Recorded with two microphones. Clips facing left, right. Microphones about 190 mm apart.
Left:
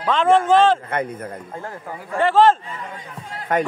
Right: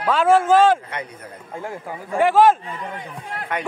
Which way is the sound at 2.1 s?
10° right (ahead or behind).